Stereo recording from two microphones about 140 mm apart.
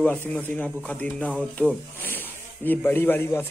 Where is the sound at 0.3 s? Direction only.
10° left (ahead or behind).